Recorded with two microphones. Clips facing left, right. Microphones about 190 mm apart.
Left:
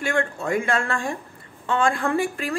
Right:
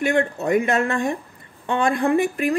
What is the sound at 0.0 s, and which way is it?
Speech, 20° right (ahead or behind).